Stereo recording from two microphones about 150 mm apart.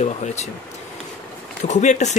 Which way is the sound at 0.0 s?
50° left (ahead or behind).